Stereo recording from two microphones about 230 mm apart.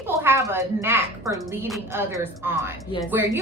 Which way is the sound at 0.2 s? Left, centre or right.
Centre.